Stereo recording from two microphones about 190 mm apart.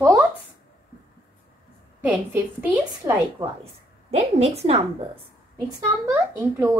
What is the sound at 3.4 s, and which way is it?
A woman's voice, 30° right (ahead or behind).